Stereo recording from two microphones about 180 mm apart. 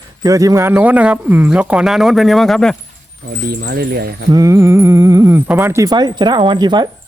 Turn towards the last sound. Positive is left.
turn(degrees=-25)  # may be behind; listen again after turning